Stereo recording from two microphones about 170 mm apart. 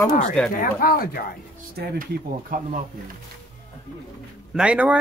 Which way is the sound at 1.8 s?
75° right (ahead or behind).